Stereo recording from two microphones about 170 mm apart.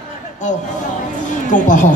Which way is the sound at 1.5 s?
50° left (ahead or behind).